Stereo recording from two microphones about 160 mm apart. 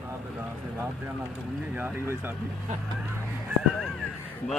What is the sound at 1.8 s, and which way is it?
Speech, 15° right (ahead or behind).